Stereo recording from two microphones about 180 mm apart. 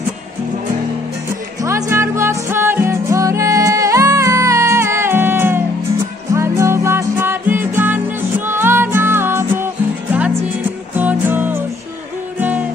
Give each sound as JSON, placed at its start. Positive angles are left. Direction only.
{"t": 1.6, "sound": "music", "side_deg": -15}
{"t": 11.0, "sound": "music", "side_deg": -10}